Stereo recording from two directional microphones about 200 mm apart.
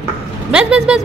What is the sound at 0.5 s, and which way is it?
Speech, 5° right (ahead or behind).